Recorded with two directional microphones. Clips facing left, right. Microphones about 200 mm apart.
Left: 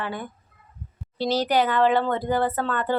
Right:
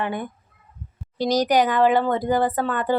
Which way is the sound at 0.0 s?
20° right (ahead or behind).